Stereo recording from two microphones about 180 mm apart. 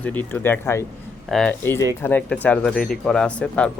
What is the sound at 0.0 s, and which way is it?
Speech, 10° left (ahead or behind).